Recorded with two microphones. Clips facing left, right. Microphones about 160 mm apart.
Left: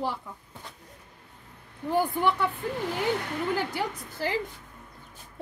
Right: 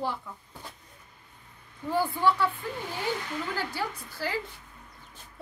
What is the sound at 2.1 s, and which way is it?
Speech, 20° left (ahead or behind).